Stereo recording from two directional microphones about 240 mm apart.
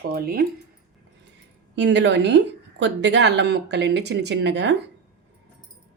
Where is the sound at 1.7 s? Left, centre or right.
Right.